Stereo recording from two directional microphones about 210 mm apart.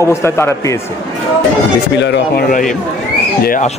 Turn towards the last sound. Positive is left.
turn(degrees=40)  # may be behind; listen again after turning